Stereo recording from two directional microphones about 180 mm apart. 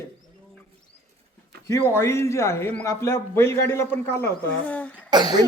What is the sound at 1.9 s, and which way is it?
A woman's voice, 15° left (ahead or behind).